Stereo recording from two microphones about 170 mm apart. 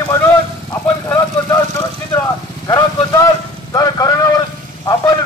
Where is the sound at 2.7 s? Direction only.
20° left (ahead or behind).